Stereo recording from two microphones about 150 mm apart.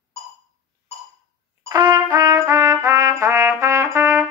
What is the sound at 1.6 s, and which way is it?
Trumpet, 25° right (ahead or behind).